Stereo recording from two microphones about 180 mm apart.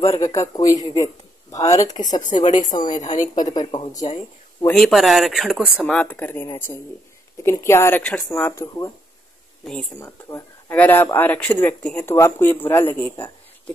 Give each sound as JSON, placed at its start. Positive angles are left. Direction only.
{"t": 0.0, "sound": "speech", "side_deg": 15}
{"t": 1.0, "sound": "a sound", "side_deg": 20}
{"t": 2.0, "sound": "speech", "side_deg": 20}
{"t": 2.4, "sound": "a woman's voice", "side_deg": 40}
{"t": 3.1, "sound": "speech", "side_deg": 20}
{"t": 4.6, "sound": "speech", "side_deg": 0}
{"t": 9.9, "sound": "speech", "side_deg": 15}